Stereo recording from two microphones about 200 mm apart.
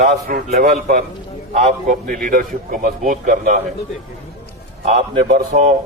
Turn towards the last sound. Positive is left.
turn(degrees=-35)  # may be behind; listen again after turning